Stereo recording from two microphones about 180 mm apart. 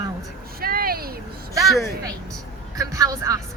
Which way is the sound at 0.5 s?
55° right (ahead or behind).